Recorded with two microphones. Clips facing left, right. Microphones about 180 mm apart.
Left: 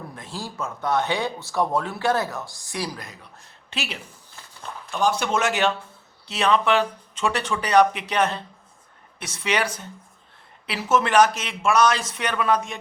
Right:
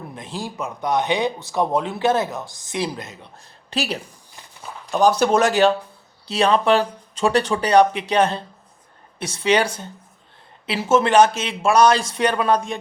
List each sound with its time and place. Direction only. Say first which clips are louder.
0.1 s speech: right 4 dB; 20° right (ahead or behind); by 4.0 s 40° right (ahead or behind)
4.3 s walk: even; 10° right (ahead or behind)
4.9 s speech: right 6 dB; 40° right (ahead or behind)